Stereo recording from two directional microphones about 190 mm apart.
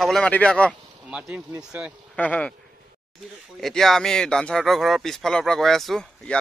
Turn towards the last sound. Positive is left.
turn(degrees=0)  # may be behind; listen again after turning